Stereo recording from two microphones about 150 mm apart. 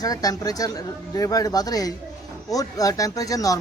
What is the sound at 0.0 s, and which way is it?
Speech, 25° left (ahead or behind).